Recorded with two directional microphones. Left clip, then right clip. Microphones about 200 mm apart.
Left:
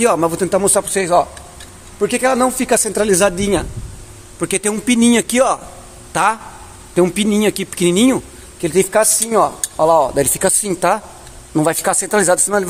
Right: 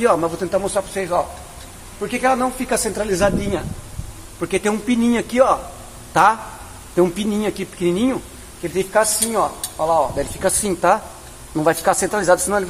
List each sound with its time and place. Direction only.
0.0 s speech: 40° left (ahead or behind)
4.4 s speech: 40° left (ahead or behind)
6.1 s speech: 35° left (ahead or behind)